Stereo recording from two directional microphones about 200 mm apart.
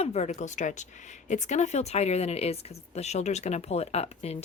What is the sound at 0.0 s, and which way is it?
Speech, 35° left (ahead or behind).